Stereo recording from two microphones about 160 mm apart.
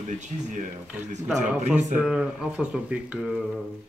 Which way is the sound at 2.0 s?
5° right (ahead or behind).